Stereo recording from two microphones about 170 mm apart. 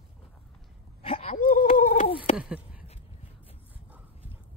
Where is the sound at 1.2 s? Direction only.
55° left (ahead or behind).